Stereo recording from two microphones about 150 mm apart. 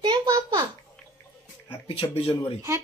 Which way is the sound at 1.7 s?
35° left (ahead or behind).